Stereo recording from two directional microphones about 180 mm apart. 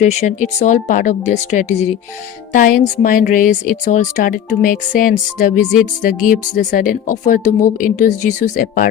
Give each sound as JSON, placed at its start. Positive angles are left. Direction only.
{"t": 0.0, "sound": "a woman's voice", "side_deg": 40}